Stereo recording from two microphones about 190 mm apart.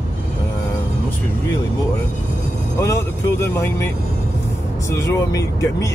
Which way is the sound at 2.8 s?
15° left (ahead or behind).